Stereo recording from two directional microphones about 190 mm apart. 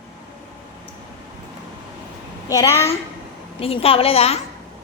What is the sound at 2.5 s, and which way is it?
Speech, 15° left (ahead or behind).